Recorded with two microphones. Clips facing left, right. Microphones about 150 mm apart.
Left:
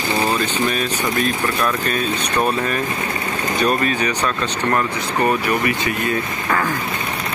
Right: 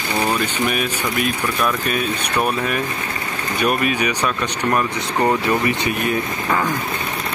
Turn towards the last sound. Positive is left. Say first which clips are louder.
# even
turn(degrees=-15)  # may be behind; listen again after turning